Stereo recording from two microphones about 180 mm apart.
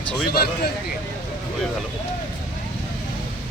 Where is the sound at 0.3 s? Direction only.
60° left (ahead or behind).